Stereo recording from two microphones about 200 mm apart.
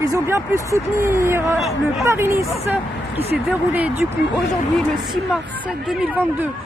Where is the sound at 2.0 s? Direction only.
10° right (ahead or behind).